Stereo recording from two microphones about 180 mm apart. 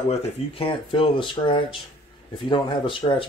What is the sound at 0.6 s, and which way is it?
Speech, 30° left (ahead or behind).